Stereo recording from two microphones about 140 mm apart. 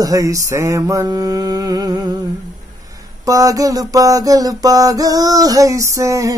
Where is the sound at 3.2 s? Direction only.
25° right (ahead or behind).